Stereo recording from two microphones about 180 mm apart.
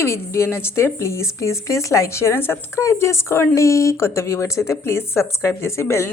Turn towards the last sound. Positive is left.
turn(degrees=15)  # may be behind; listen again after turning